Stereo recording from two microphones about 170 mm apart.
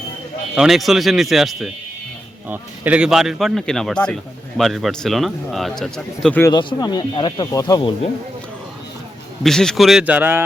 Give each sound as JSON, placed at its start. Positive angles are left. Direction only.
{"t": 0.5, "sound": "speech", "side_deg": 0}
{"t": 6.4, "sound": "speech", "side_deg": 25}
{"t": 9.4, "sound": "speech", "side_deg": 5}